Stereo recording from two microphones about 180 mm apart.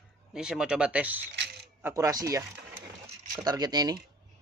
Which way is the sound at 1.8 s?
15° right (ahead or behind).